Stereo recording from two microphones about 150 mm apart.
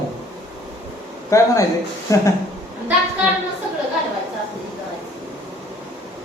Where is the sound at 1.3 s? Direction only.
20° left (ahead or behind).